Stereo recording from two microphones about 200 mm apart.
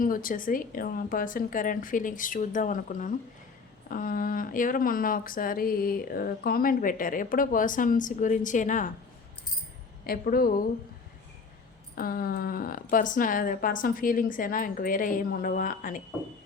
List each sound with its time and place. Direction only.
0.0 s speech: 45° left (ahead or behind)
10.1 s speech: 45° left (ahead or behind)
11.9 s speech: 50° left (ahead or behind)